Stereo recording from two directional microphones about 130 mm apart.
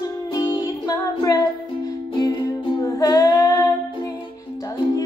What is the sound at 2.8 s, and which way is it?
Music, 30° left (ahead or behind).